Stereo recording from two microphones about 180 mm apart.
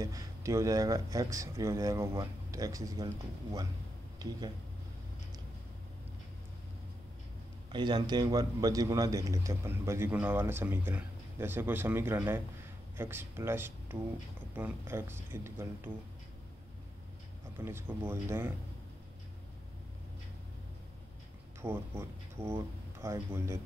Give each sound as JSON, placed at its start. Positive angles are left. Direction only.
{"t": 0.0, "sound": "speech", "side_deg": -20}
{"t": 4.2, "sound": "speech", "side_deg": -20}
{"t": 7.7, "sound": "speech", "side_deg": -25}
{"t": 17.6, "sound": "speech", "side_deg": -15}
{"t": 21.5, "sound": "speech", "side_deg": -15}